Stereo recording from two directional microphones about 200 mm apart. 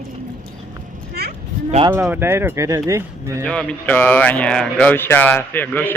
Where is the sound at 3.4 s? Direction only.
5° left (ahead or behind).